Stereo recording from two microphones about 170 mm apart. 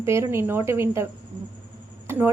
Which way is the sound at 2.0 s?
15° right (ahead or behind).